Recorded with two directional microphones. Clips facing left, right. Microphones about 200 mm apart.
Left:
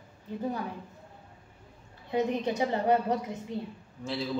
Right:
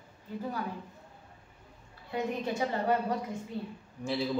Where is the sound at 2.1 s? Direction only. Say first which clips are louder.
Left 4 dB; 20° left (ahead or behind).